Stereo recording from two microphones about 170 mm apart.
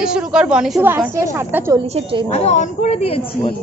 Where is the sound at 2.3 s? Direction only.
40° left (ahead or behind).